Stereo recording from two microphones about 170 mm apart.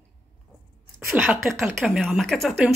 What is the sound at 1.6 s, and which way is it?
Speech, centre (ahead or behind).